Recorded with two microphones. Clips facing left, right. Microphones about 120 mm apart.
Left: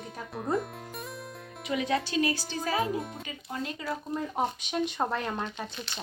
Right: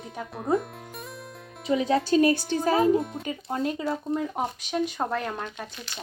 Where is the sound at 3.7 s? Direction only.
25° right (ahead or behind).